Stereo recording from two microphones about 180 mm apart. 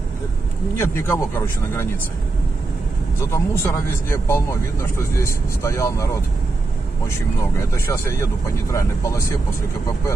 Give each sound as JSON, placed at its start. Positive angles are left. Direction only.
{"t": 0.7, "sound": "speech", "side_deg": 15}
{"t": 3.3, "sound": "speech", "side_deg": 15}
{"t": 7.7, "sound": "speech", "side_deg": 15}